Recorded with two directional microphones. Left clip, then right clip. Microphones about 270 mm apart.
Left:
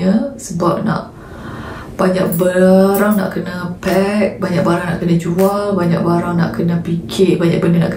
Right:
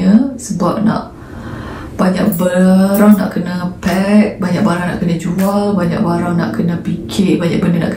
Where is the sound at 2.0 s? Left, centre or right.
Centre.